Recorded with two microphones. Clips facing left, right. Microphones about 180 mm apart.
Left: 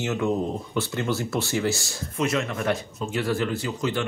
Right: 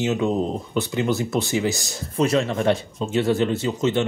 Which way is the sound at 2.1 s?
35° right (ahead or behind).